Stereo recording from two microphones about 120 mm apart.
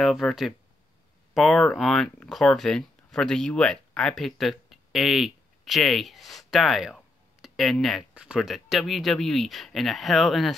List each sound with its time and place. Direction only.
0.0 s speech: centre (ahead or behind)